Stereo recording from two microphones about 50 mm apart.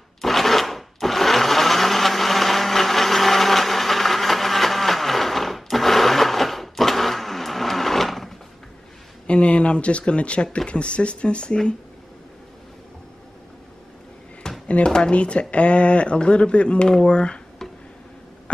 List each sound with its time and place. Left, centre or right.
0.2 s blender: centre
9.3 s speech: left
14.7 s speech: centre